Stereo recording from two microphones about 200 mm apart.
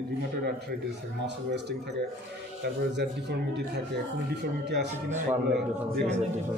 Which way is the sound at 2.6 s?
60° right (ahead or behind).